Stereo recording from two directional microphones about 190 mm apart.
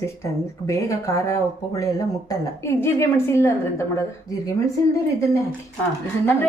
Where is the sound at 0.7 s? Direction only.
15° left (ahead or behind).